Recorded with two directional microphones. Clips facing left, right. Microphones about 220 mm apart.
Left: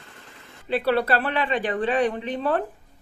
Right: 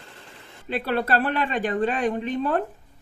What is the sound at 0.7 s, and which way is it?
Speech, 45° right (ahead or behind).